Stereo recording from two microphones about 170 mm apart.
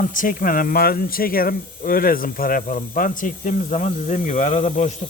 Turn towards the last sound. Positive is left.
turn(degrees=45)  # may be behind; listen again after turning